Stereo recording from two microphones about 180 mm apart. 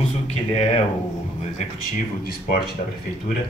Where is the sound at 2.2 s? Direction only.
55° left (ahead or behind).